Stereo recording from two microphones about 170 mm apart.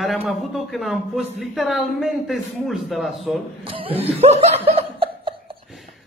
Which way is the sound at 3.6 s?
35° right (ahead or behind).